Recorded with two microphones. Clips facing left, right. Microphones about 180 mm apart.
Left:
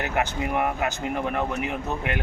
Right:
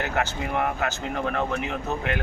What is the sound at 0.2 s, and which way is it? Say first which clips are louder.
Speech: left 2 dB; 15° left (ahead or behind).